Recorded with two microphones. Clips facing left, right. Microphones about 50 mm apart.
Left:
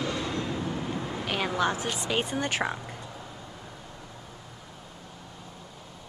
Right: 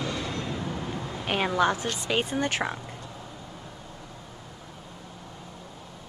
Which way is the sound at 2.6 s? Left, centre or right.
Centre.